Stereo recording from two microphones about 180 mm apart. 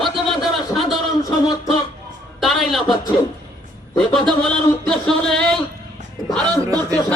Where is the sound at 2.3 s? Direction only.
Centre (ahead or behind).